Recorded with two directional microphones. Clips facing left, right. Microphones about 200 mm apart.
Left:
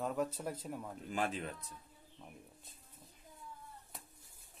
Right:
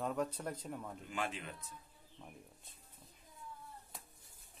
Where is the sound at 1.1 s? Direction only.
40° left (ahead or behind).